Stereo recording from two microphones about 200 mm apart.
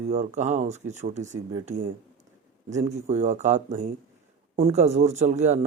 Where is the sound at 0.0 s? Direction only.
35° right (ahead or behind).